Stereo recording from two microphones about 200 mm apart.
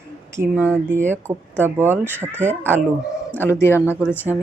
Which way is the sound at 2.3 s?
10° left (ahead or behind).